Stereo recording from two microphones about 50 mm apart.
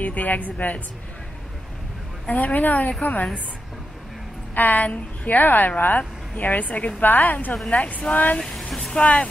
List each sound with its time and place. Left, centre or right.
0.0 s a woman's voice: left
2.2 s a woman's voice: left
4.6 s a woman's voice: left
8.4 s speech: centre
9.0 s speech: left